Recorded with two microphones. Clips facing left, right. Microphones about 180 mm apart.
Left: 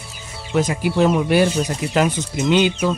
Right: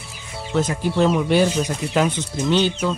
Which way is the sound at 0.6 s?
10° left (ahead or behind).